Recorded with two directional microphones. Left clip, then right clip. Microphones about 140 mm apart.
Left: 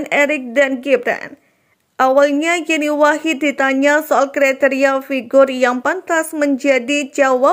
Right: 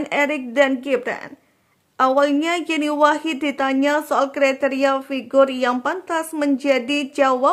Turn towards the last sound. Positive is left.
turn(degrees=15)  # may be behind; listen again after turning